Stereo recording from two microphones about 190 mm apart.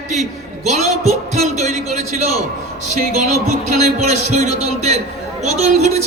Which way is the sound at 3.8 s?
35° right (ahead or behind).